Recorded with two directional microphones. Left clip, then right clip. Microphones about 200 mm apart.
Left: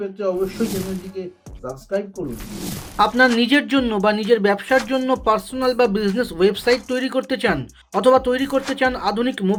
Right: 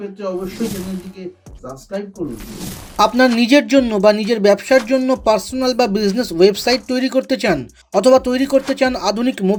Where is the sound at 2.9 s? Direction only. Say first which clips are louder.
Right 2 dB; 40° right (ahead or behind).